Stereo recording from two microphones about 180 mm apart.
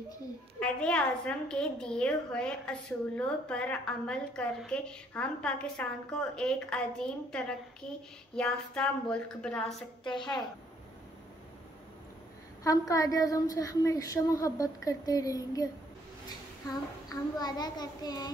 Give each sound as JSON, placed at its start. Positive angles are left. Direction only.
{"t": 0.6, "sound": "a woman's voice", "side_deg": 5}
{"t": 12.6, "sound": "a woman's voice", "side_deg": 20}
{"t": 17.1, "sound": "a woman's voice", "side_deg": 20}